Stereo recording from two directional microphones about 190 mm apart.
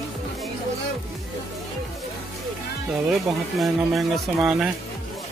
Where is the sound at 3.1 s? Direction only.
Centre (ahead or behind).